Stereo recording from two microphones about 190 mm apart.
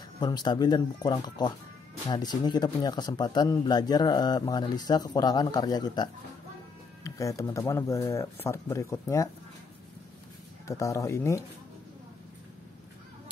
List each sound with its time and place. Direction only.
0.2 s speech: 20° left (ahead or behind)
10.7 s speech: 15° left (ahead or behind)